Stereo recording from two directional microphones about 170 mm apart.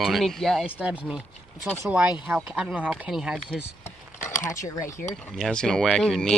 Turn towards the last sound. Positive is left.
turn(degrees=5)  # may be behind; listen again after turning